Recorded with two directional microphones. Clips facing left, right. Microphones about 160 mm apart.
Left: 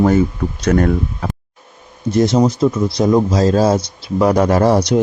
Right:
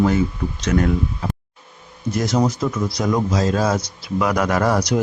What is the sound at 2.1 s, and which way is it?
A man's voice, 25° left (ahead or behind).